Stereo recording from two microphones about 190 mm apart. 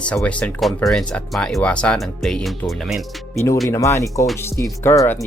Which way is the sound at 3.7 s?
15° left (ahead or behind).